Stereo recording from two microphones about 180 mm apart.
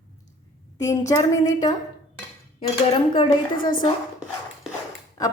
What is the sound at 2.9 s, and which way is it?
Speech, 30° left (ahead or behind).